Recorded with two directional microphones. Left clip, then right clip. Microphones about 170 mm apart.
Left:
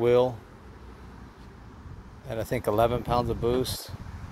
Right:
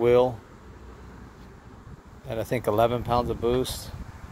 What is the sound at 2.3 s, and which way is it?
Speech, 10° right (ahead or behind).